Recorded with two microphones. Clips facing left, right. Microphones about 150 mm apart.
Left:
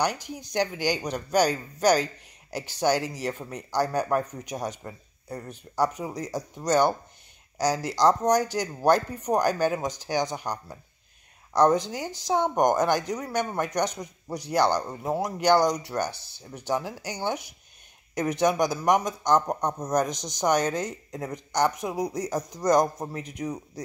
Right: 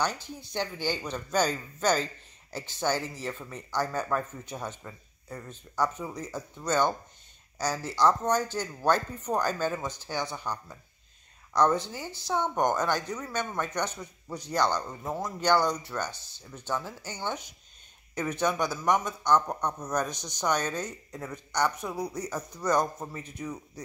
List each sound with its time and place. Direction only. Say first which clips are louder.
0.0 s speech: left 4 dB; 15° left (ahead or behind)